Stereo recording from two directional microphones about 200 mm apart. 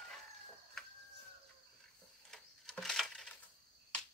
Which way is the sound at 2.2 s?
Centre (ahead or behind).